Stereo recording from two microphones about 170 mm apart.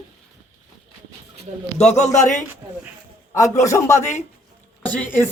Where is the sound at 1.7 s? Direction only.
40° left (ahead or behind).